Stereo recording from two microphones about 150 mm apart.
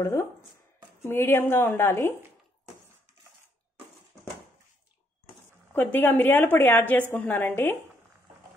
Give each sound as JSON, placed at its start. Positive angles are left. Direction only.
{"t": 0.0, "sound": "a woman's voice", "side_deg": 20}
{"t": 5.7, "sound": "a woman's voice", "side_deg": 15}